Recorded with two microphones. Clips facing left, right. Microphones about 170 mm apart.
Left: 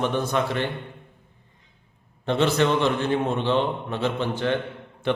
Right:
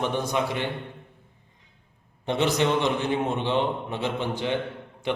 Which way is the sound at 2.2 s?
15° right (ahead or behind).